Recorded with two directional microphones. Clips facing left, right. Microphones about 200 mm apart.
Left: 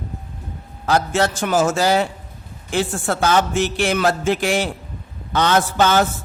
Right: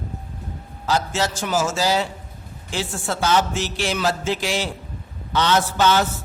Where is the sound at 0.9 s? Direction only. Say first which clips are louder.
Left 4 dB; 55° left (ahead or behind).